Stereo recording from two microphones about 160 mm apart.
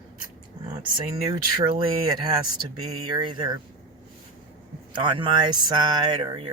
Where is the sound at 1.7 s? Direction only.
30° right (ahead or behind).